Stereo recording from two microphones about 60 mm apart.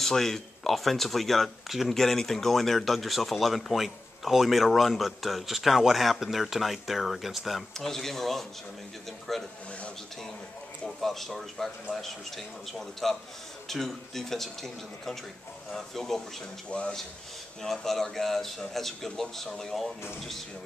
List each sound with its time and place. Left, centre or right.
0.0 s speech: centre
11.0 s speech: centre
16.7 s speech: left
17.6 s speech: centre